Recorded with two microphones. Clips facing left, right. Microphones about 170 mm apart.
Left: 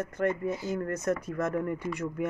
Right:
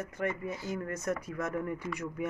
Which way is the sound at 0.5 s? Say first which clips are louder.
Left 5 dB; 40° left (ahead or behind).